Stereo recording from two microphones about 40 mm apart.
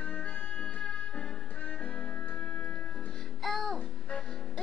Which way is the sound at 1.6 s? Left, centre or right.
Left.